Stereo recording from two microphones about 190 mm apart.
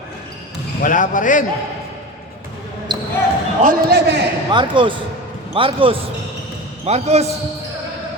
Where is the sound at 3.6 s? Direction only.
55° right (ahead or behind).